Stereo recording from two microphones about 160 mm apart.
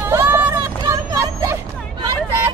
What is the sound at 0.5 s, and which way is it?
Vehicle, 25° right (ahead or behind).